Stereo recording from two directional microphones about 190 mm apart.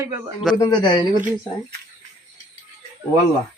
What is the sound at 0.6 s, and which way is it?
Speech, 25° left (ahead or behind).